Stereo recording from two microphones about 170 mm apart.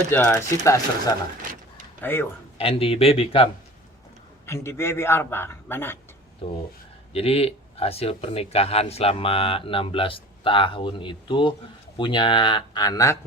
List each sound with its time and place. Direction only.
0.1 s a man's voice: 10° left (ahead or behind)
2.6 s speech: 35° left (ahead or behind)
4.4 s a man's voice: 15° left (ahead or behind)
6.4 s speech: 35° left (ahead or behind)